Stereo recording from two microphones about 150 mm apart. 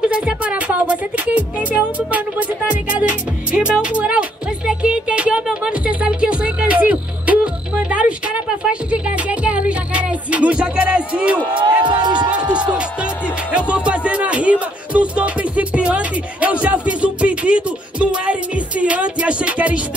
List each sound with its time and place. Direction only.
0.0 s music: 10° right (ahead or behind)
11.9 s speech: 30° right (ahead or behind)
12.7 s music: 5° right (ahead or behind)